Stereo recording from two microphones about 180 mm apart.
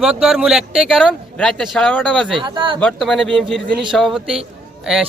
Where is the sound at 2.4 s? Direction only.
25° right (ahead or behind).